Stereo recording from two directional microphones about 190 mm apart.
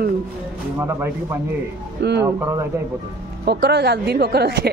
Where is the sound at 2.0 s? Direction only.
60° right (ahead or behind).